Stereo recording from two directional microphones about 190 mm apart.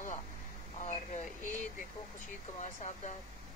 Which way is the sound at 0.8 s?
40° left (ahead or behind).